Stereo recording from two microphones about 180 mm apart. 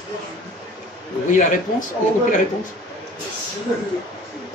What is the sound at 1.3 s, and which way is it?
Speech, 45° left (ahead or behind).